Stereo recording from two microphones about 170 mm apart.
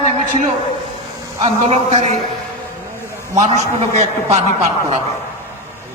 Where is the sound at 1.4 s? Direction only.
35° right (ahead or behind).